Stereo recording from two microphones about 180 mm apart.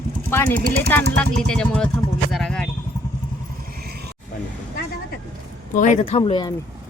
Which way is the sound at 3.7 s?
60° right (ahead or behind).